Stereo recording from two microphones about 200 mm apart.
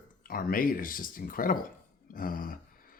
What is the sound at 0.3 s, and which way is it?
Speech, 45° left (ahead or behind).